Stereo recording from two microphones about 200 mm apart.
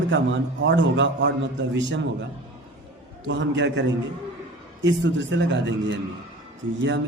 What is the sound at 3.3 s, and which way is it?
A man's voice, 60° right (ahead or behind).